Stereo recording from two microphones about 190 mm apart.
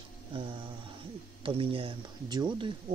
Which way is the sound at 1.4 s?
30° right (ahead or behind).